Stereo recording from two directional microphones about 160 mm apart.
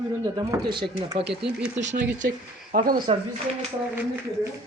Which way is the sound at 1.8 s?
50° right (ahead or behind).